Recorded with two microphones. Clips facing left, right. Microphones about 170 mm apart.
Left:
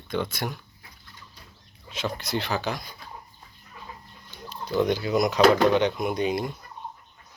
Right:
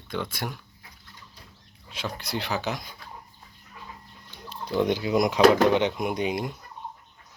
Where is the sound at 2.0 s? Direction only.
10° right (ahead or behind).